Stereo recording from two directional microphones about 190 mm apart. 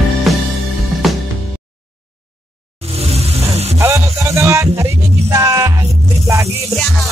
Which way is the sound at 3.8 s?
15° right (ahead or behind).